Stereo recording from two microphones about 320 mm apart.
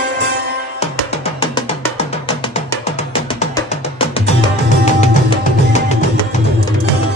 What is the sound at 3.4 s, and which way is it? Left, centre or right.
Music, centre.